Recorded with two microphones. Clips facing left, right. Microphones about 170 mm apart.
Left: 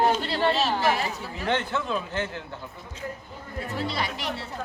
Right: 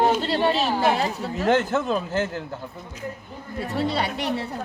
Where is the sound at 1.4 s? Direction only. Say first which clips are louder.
Right 6 dB; 45° right (ahead or behind).